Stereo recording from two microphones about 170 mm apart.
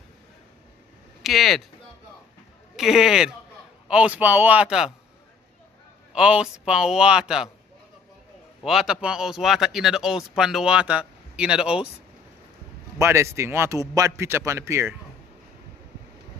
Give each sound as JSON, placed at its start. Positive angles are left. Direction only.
{"t": 1.2, "sound": "speech", "side_deg": 0}
{"t": 2.7, "sound": "a man's voice", "side_deg": 0}
{"t": 6.1, "sound": "speech", "side_deg": -5}
{"t": 8.6, "sound": "speech", "side_deg": -5}
{"t": 13.0, "sound": "a man's voice", "side_deg": -15}